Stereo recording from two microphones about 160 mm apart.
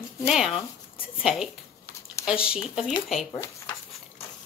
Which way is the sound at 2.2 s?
20° left (ahead or behind).